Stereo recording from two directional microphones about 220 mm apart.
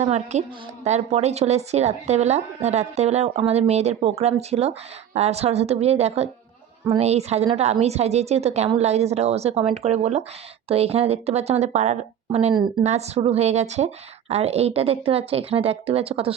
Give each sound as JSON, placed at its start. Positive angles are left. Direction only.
{"t": 0.0, "sound": "a woman's voice", "side_deg": -30}